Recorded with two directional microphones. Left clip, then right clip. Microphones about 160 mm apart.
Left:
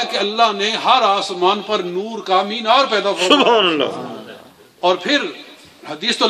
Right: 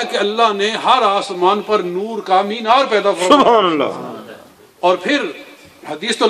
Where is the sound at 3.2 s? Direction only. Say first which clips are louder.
Right 2 dB; 30° right (ahead or behind).